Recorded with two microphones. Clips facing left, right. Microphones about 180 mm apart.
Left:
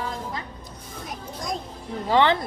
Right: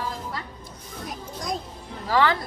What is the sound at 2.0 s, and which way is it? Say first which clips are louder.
Speech: left 2 dB; 25° left (ahead or behind).